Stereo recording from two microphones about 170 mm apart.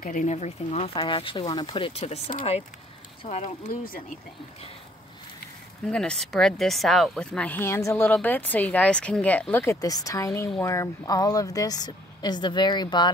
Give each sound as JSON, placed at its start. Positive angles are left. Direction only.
{"t": 0.0, "sound": "speech", "side_deg": 50}
{"t": 3.3, "sound": "speech", "side_deg": 40}
{"t": 5.9, "sound": "a woman's voice", "side_deg": 5}